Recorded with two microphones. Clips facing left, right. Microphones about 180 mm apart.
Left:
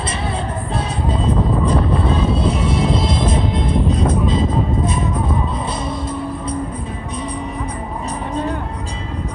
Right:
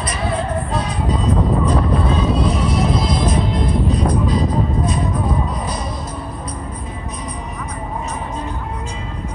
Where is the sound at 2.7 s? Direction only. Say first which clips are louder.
Even; 25° left (ahead or behind).